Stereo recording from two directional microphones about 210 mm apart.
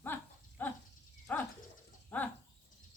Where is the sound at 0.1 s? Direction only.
10° left (ahead or behind).